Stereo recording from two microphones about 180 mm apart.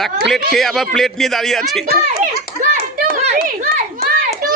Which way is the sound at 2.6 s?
45° right (ahead or behind).